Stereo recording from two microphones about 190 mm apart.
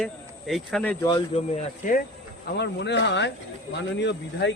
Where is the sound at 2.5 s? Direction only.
65° left (ahead or behind).